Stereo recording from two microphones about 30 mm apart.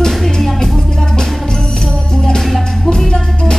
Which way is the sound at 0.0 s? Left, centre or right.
Centre.